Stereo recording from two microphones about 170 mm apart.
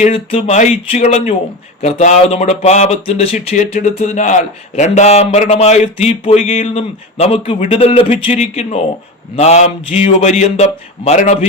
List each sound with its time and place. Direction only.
0.0 s speech: 35° left (ahead or behind)